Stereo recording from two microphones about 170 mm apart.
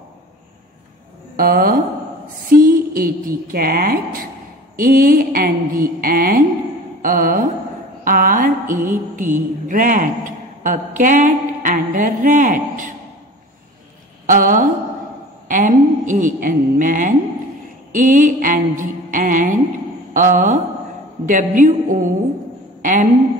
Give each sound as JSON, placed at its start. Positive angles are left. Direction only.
{"t": 1.3, "sound": "a woman's voice", "side_deg": -60}
{"t": 8.0, "sound": "mantra", "side_deg": -55}
{"t": 14.2, "sound": "a woman's voice", "side_deg": -50}
{"t": 15.4, "sound": "a sound", "side_deg": -50}
{"t": 17.9, "sound": "mantra", "side_deg": -50}
{"t": 20.2, "sound": "a woman's voice", "side_deg": -50}